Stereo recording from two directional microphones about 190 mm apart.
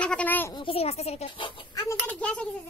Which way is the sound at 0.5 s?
30° left (ahead or behind).